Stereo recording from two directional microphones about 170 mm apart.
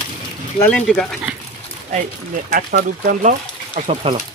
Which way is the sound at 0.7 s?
5° left (ahead or behind).